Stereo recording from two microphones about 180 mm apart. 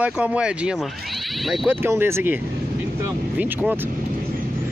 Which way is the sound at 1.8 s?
15° right (ahead or behind).